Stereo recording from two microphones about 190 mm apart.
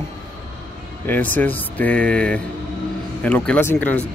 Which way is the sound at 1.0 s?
10° left (ahead or behind).